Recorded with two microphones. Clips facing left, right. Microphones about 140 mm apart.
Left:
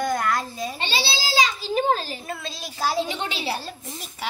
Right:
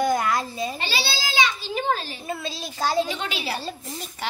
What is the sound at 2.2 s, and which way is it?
Speech, centre (ahead or behind).